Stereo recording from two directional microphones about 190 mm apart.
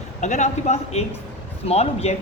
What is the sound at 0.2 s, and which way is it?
Speech, 40° left (ahead or behind).